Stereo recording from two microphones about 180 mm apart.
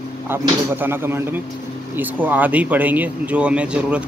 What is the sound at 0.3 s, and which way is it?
Speech, 10° right (ahead or behind).